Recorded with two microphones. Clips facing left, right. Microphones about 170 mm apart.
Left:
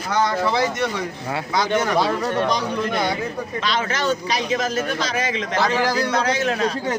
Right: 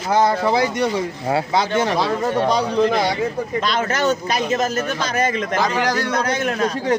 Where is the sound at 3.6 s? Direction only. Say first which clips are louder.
Right 2 dB; 45° right (ahead or behind).